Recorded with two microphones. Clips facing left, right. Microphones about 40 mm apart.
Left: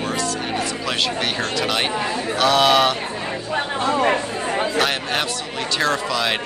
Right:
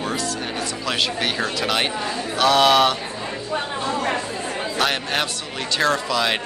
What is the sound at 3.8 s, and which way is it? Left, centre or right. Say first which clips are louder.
Speech: left 7 dB; left.